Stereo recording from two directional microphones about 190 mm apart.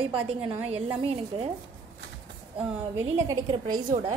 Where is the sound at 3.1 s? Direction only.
20° right (ahead or behind).